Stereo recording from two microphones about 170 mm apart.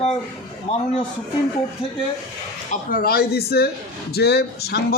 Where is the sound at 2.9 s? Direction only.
60° left (ahead or behind).